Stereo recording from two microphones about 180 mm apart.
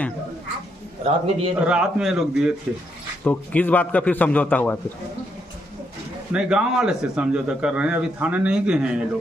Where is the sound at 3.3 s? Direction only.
10° left (ahead or behind).